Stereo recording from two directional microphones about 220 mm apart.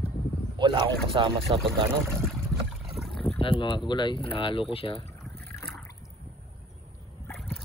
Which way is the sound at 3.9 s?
20° left (ahead or behind).